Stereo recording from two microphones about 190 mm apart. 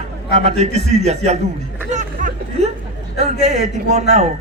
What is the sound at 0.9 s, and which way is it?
Speech, 35° right (ahead or behind).